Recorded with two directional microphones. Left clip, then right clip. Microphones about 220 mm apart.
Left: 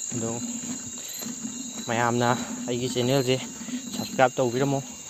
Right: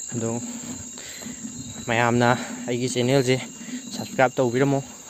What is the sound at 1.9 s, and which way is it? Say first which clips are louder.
Speech: right 4 dB; 40° right (ahead or behind).